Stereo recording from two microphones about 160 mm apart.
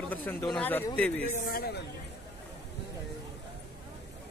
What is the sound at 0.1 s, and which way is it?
Speech, 10° left (ahead or behind).